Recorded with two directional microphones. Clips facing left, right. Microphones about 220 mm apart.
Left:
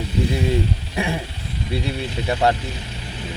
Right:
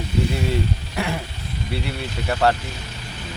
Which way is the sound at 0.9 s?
15° left (ahead or behind).